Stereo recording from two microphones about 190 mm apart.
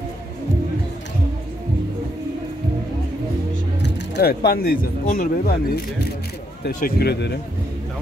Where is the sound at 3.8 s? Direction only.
55° left (ahead or behind).